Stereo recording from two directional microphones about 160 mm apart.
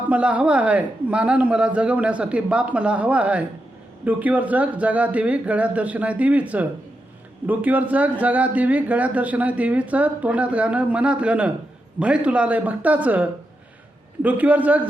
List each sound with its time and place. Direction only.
0.1 s speech: 10° right (ahead or behind)